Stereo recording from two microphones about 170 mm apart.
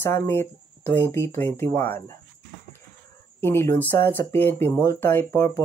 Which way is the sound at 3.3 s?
15° left (ahead or behind).